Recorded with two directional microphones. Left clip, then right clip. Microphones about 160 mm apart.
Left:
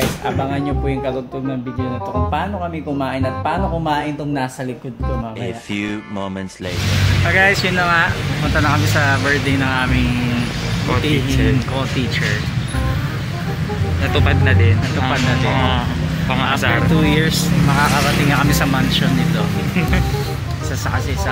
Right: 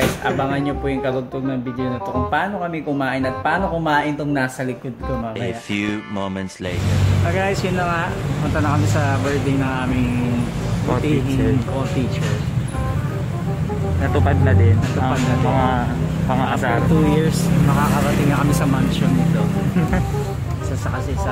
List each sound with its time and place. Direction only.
0.4 s speech: centre (ahead or behind)
3.0 s speech: centre (ahead or behind)
7.2 s speech: centre (ahead or behind)
14.2 s speech: 30° right (ahead or behind)
16.9 s speech: centre (ahead or behind)